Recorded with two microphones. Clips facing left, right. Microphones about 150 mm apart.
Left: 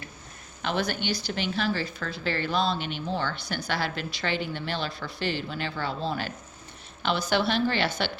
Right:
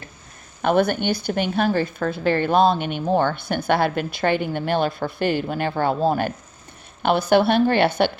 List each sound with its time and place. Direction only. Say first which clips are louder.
0.6 s a woman's voice: right 10 dB; 50° right (ahead or behind)